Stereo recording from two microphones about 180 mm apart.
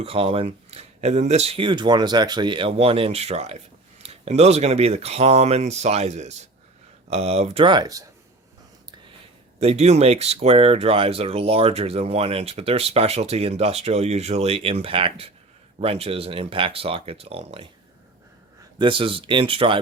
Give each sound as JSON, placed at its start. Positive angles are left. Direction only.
{"t": 0.0, "sound": "speech", "side_deg": -30}
{"t": 9.6, "sound": "speech", "side_deg": -35}
{"t": 18.8, "sound": "speech", "side_deg": -30}